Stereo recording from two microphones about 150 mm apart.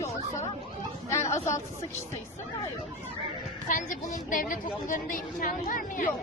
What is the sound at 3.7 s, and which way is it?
A woman's voice, 60° left (ahead or behind).